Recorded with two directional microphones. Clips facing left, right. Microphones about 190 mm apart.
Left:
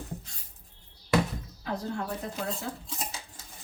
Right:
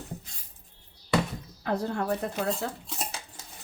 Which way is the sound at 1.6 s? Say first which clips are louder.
Right 5 dB; 65° right (ahead or behind).